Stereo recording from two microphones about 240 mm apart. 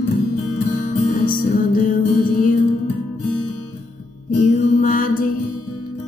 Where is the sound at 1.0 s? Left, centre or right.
Left.